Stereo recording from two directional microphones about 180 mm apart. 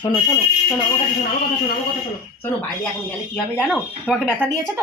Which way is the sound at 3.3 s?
Centre (ahead or behind).